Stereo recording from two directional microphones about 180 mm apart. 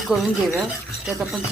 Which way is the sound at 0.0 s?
Centre (ahead or behind).